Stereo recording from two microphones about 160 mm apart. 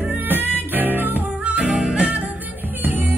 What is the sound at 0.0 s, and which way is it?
Music, 10° right (ahead or behind).